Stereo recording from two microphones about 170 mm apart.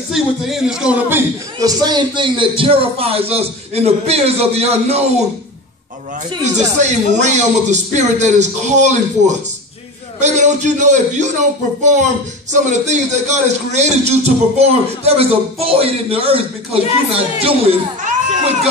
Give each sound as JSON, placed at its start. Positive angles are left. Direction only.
{"t": 0.1, "sound": "a man's voice", "side_deg": -5}
{"t": 6.4, "sound": "a man's voice", "side_deg": -40}